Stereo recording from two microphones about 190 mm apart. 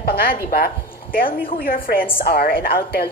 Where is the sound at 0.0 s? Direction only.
55° left (ahead or behind).